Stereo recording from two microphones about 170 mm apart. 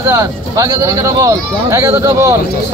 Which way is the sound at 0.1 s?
20° right (ahead or behind).